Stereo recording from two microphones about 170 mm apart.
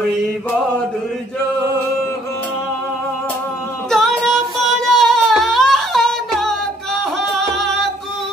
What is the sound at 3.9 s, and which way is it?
Music, centre (ahead or behind).